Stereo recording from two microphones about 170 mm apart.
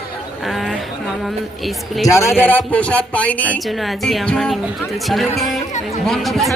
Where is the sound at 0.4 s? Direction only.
Centre (ahead or behind).